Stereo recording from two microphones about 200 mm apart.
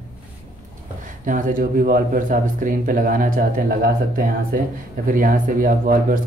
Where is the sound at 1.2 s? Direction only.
40° right (ahead or behind).